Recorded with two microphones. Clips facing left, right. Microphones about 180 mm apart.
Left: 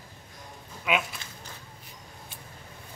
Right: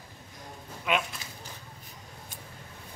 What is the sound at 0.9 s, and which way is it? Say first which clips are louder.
Sheep: left 1 dB; 5° left (ahead or behind).